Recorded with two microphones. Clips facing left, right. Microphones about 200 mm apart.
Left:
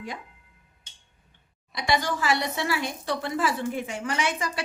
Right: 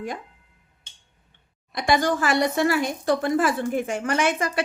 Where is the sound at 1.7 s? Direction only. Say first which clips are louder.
Right 5 dB; 50° right (ahead or behind).